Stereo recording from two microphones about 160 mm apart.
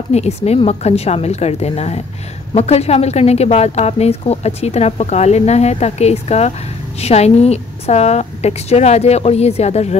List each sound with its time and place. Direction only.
0.1 s a woman's voice: 40° left (ahead or behind)